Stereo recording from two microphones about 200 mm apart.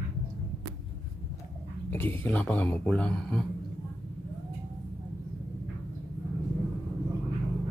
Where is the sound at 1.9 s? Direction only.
10° left (ahead or behind).